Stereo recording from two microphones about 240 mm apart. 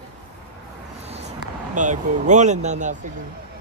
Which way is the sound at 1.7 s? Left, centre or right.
Right.